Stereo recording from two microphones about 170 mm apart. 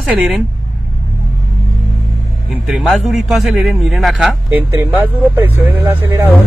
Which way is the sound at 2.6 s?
Centre (ahead or behind).